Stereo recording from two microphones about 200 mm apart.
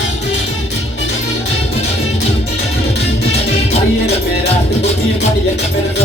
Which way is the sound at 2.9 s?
55° left (ahead or behind).